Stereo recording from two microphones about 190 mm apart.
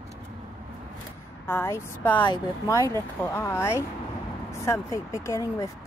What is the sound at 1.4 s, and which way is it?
Speech, 15° left (ahead or behind).